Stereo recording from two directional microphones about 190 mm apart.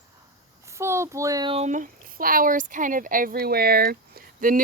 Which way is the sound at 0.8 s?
15° right (ahead or behind).